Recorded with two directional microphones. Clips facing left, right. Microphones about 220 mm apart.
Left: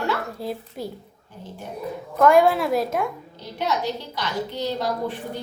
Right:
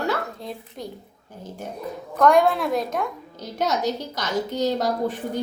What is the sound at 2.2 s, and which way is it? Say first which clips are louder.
Speech: left 1 dB; 5° left (ahead or behind).